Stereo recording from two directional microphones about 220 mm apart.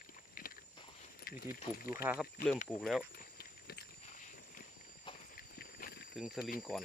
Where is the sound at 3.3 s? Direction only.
45° left (ahead or behind).